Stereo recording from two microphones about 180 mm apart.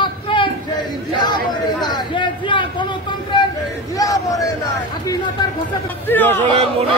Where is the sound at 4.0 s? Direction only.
20° left (ahead or behind).